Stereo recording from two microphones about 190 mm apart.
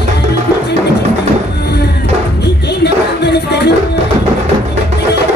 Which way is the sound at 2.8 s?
60° left (ahead or behind).